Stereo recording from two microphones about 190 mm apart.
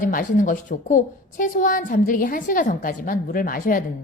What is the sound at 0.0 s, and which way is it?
A woman's voice, 45° left (ahead or behind).